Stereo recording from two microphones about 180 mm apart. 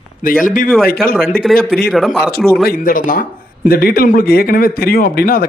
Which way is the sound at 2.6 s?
50° left (ahead or behind).